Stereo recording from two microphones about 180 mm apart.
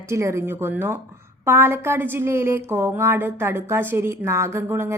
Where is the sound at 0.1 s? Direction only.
15° right (ahead or behind).